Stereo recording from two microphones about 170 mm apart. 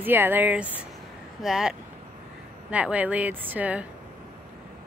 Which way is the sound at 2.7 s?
10° right (ahead or behind).